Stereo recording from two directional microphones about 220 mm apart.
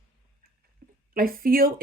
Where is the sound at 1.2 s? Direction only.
40° right (ahead or behind).